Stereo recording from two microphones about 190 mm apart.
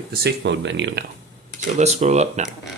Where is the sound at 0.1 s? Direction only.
60° right (ahead or behind).